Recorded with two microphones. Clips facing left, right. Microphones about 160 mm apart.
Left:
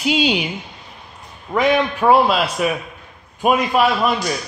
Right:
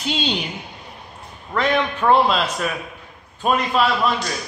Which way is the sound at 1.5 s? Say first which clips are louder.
Left 4 dB; 10° left (ahead or behind).